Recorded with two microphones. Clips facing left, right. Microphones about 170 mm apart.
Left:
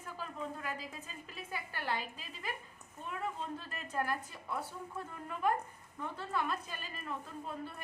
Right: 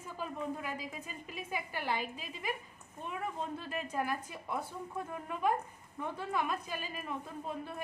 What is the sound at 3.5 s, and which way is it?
A woman's voice, 10° right (ahead or behind).